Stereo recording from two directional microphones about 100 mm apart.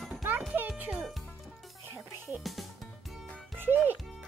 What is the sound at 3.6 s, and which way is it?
Music, 20° right (ahead or behind).